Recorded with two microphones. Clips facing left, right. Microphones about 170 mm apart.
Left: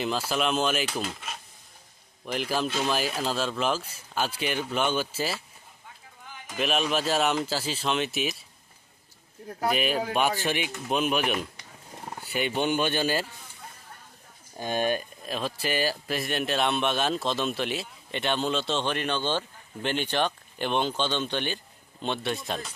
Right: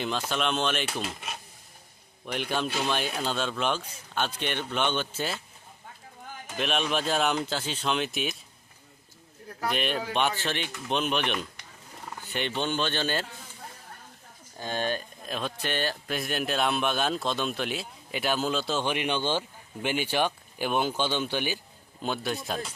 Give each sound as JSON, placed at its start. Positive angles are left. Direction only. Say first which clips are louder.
{"t": 0.0, "sound": "speech", "louder": "left 2 dB", "side_deg": 5}
{"t": 6.6, "sound": "speech", "louder": "left 2 dB", "side_deg": 0}
{"t": 9.6, "sound": "speech", "louder": "left 3 dB", "side_deg": 5}
{"t": 14.6, "sound": "speech", "louder": "left 3 dB", "side_deg": 15}
{"t": 15.2, "sound": "speech", "louder": "left 2 dB", "side_deg": 0}